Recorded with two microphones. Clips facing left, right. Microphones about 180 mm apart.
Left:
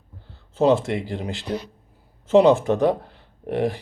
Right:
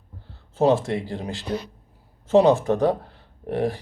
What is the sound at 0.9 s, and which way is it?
Speech, 20° left (ahead or behind).